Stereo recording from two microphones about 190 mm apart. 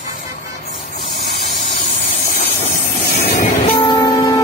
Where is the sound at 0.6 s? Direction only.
40° left (ahead or behind).